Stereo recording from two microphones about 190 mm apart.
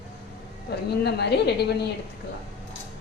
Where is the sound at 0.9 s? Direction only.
60° left (ahead or behind).